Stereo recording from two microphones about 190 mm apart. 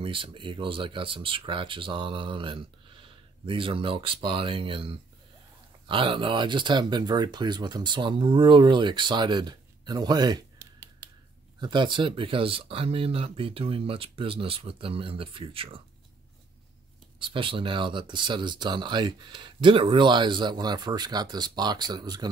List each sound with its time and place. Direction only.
0.0 s speech: 25° right (ahead or behind)
17.2 s speech: 25° right (ahead or behind)